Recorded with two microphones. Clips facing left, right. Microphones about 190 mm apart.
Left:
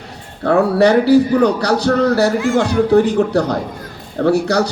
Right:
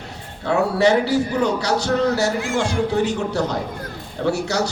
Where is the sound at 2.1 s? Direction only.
60° left (ahead or behind).